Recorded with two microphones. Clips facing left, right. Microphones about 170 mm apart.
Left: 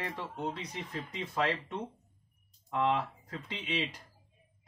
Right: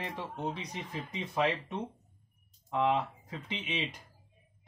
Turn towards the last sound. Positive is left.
turn(degrees=-15)  # may be behind; listen again after turning